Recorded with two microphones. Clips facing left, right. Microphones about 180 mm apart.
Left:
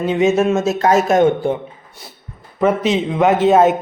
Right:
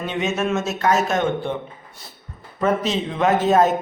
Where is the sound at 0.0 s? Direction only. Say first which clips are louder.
Left 9 dB; 30° left (ahead or behind).